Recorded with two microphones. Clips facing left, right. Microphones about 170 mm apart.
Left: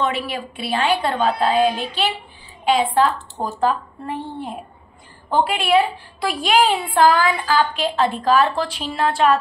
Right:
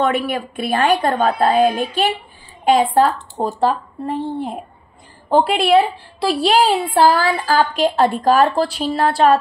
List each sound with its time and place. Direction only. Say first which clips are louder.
0.0 s a woman's voice: right 5 dB; 50° right (ahead or behind)
5.3 s a woman's voice: right 4 dB; 35° right (ahead or behind)